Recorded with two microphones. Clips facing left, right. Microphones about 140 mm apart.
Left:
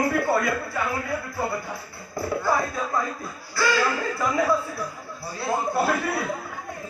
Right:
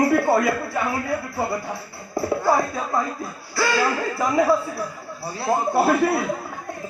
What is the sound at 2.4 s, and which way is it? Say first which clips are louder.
Music: right 3 dB; 30° right (ahead or behind).